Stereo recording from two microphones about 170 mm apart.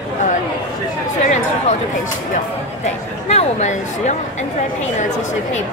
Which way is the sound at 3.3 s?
40° left (ahead or behind).